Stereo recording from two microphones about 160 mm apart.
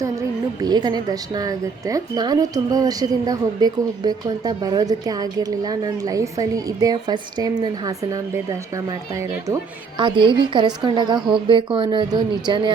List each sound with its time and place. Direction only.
0.0 s a woman's voice: 20° right (ahead or behind)
10.0 s a woman's voice: 30° right (ahead or behind)